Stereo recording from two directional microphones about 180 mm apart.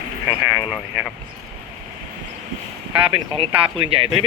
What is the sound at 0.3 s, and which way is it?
Speech, 10° right (ahead or behind).